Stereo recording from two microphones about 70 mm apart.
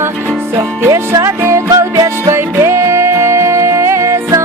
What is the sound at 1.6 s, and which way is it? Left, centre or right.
Music, right.